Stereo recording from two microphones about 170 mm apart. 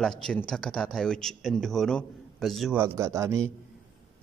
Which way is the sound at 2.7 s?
15° right (ahead or behind).